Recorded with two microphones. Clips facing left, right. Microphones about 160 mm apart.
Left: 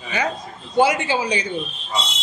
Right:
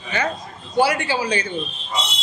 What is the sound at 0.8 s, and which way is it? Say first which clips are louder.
Speech: left 1 dB; 20° left (ahead or behind).